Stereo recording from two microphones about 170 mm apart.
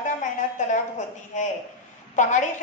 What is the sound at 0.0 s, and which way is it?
A woman's voice, 45° left (ahead or behind).